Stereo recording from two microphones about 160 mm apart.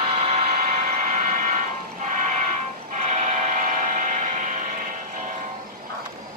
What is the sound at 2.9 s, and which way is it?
Train, 50° right (ahead or behind).